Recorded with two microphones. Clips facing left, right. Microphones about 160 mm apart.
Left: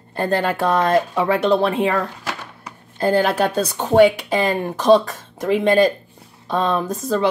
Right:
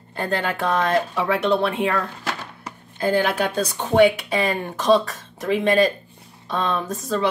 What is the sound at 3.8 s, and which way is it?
Speech, 35° left (ahead or behind).